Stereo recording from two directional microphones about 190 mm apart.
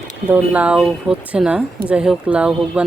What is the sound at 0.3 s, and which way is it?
Speech, 10° right (ahead or behind).